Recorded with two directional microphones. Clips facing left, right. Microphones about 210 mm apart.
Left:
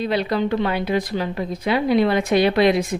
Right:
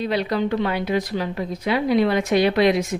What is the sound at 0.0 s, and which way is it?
Speech, 30° left (ahead or behind).